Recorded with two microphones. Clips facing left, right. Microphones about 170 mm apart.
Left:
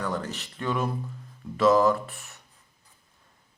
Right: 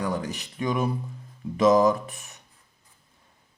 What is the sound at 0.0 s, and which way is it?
Speech, 15° right (ahead or behind).